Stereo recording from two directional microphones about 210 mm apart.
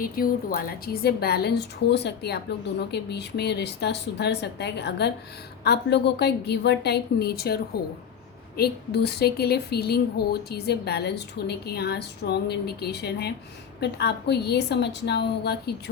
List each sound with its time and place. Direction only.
0.0 s a woman's voice: 45° left (ahead or behind)